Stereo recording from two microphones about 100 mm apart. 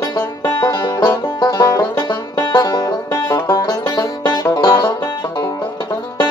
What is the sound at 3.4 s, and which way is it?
Music, 45° left (ahead or behind).